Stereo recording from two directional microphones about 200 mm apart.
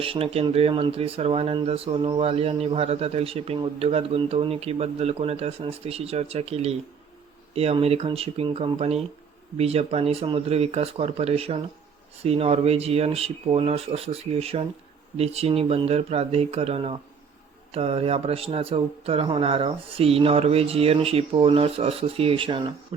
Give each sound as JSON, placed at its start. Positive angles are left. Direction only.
{"t": 0.0, "sound": "speech", "side_deg": -30}